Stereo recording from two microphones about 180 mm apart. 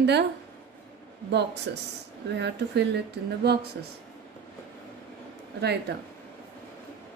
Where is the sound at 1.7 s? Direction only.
70° right (ahead or behind).